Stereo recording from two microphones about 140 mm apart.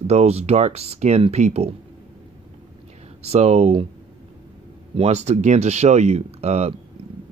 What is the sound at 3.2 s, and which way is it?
Speech, 50° right (ahead or behind).